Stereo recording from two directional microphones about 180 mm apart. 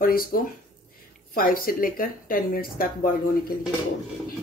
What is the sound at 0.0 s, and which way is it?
Speech, 55° left (ahead or behind).